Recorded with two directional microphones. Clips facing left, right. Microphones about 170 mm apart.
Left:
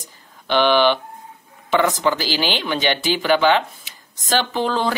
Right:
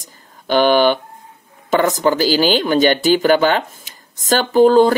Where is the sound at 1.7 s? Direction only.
40° right (ahead or behind).